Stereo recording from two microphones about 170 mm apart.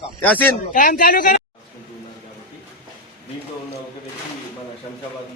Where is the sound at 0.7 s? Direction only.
50° left (ahead or behind).